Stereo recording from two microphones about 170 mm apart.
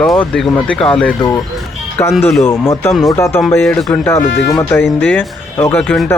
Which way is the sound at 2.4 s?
15° left (ahead or behind).